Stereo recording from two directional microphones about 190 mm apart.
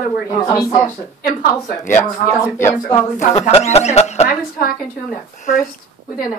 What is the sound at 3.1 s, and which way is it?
Speech, 35° left (ahead or behind).